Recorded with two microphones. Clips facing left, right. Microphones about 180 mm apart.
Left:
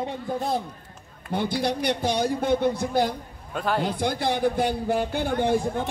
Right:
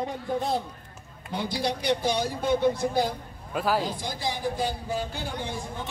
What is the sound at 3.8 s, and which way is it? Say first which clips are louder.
Speech: left 6 dB; 60° left (ahead or behind).